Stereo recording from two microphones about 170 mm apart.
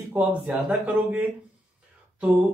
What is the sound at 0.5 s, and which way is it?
Speech, 10° right (ahead or behind).